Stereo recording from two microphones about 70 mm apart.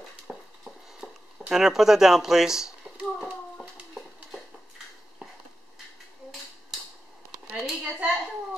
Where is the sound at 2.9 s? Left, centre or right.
Centre.